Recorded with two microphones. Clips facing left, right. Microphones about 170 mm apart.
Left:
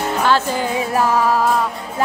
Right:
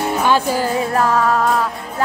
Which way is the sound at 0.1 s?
10° right (ahead or behind).